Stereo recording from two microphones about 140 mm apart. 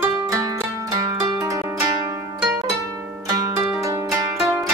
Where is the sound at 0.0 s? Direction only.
25° right (ahead or behind).